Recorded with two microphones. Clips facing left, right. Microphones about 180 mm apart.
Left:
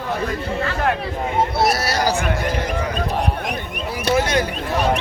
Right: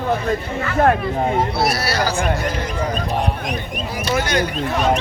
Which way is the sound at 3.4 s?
60° left (ahead or behind).